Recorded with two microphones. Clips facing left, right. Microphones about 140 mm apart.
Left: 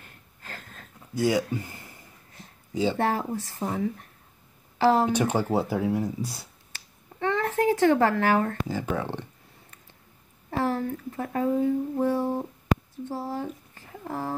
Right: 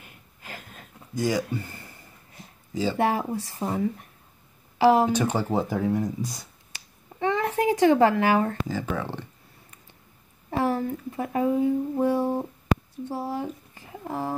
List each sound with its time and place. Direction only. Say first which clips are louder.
0.0 s a sound: right 1 dB; 10° right (ahead or behind)
1.1 s speech: left 1 dB; 10° left (ahead or behind)
3.0 s speech: right 2 dB; 15° right (ahead or behind)
5.1 s speech: even; 10° left (ahead or behind)
6.7 s finger snapping: right 1 dB; 15° right (ahead or behind)
8.6 s speech: even; 15° left (ahead or behind)
10.5 s speech: right 2 dB; 15° right (ahead or behind)